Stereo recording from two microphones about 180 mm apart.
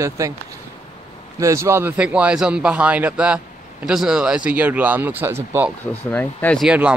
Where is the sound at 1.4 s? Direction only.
15° right (ahead or behind).